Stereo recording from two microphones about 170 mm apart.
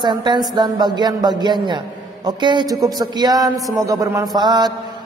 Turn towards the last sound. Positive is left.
turn(degrees=-25)  # may be behind; listen again after turning